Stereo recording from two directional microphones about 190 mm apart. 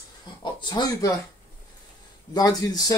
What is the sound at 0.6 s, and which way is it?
Speech, 20° left (ahead or behind).